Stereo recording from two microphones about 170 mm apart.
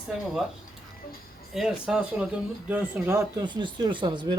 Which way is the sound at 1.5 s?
5° right (ahead or behind).